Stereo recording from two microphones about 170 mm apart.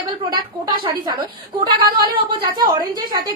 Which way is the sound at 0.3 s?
25° right (ahead or behind).